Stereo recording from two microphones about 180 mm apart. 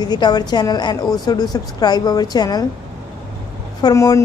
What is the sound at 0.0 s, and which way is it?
A woman's voice, 25° left (ahead or behind).